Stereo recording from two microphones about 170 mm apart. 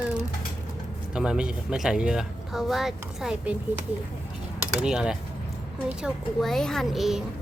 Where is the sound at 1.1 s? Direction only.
5° right (ahead or behind).